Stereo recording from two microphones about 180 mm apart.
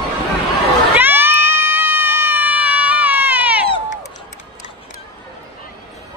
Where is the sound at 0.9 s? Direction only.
10° right (ahead or behind).